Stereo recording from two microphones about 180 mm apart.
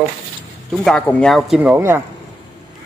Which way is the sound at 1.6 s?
10° right (ahead or behind).